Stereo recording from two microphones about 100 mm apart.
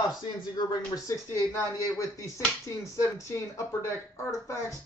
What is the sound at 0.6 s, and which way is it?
Speech, 45° left (ahead or behind).